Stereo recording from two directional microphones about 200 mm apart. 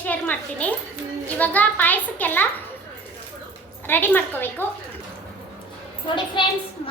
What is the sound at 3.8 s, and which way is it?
Speech, 10° left (ahead or behind).